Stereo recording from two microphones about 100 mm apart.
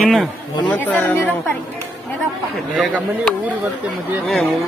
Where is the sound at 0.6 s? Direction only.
15° left (ahead or behind).